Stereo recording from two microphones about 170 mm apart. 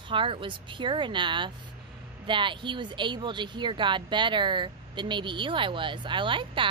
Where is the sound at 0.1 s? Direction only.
30° right (ahead or behind).